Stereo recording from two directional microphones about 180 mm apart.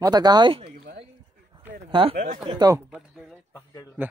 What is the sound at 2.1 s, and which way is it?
Speech, 45° right (ahead or behind).